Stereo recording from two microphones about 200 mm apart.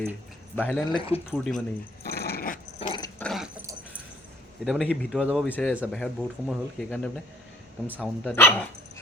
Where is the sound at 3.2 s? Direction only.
Centre (ahead or behind).